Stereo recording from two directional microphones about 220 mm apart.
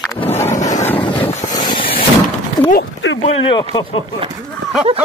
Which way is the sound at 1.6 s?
20° left (ahead or behind).